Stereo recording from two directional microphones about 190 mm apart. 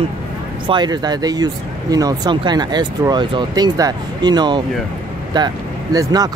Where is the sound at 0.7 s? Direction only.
20° right (ahead or behind).